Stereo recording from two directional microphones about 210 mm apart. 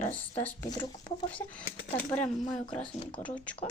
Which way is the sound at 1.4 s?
5° left (ahead or behind).